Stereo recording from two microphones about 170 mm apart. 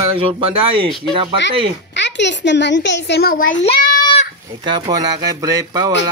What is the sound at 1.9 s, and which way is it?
Speech, 90° left.